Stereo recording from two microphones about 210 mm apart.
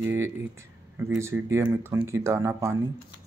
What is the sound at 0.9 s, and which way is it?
Speech, 10° right (ahead or behind).